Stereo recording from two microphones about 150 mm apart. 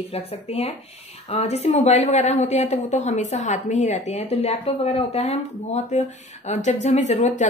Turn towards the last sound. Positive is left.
turn(degrees=55)  # may be behind; listen again after turning